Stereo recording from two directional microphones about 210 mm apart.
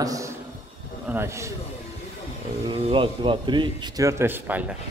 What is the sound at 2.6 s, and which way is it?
Speech, 25° right (ahead or behind).